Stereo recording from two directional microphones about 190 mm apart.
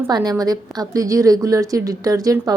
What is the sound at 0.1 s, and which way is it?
A woman's voice, 20° right (ahead or behind).